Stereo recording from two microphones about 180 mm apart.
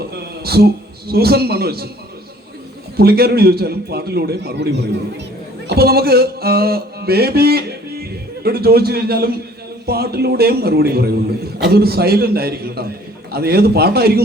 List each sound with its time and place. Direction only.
0.1 s a man's voice: 60° right (ahead or behind)
3.0 s a man's voice: 60° right (ahead or behind)
5.6 s music: 60° right (ahead or behind)
8.4 s a man's voice: 60° right (ahead or behind)